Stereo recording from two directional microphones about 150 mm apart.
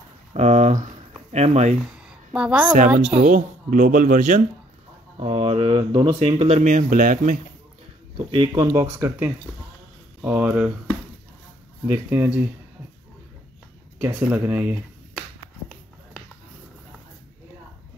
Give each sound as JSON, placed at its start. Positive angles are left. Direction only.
{"t": 0.3, "sound": "speech", "side_deg": -45}
{"t": 1.9, "sound": "a sound", "side_deg": -5}
{"t": 2.9, "sound": "speech", "side_deg": -5}
{"t": 3.3, "sound": "speech", "side_deg": -60}
{"t": 5.2, "sound": "speech", "side_deg": -35}
{"t": 8.3, "sound": "speech", "side_deg": -30}
{"t": 11.9, "sound": "speech", "side_deg": -15}
{"t": 13.9, "sound": "speech", "side_deg": -10}